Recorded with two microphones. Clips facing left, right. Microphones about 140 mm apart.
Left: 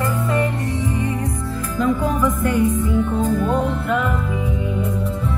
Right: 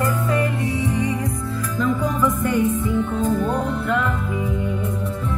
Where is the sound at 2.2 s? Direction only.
10° left (ahead or behind).